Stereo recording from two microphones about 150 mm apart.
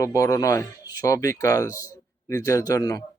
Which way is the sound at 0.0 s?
20° left (ahead or behind).